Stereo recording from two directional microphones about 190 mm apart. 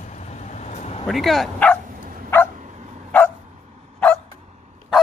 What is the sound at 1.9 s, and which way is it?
Bow-wow, 45° right (ahead or behind).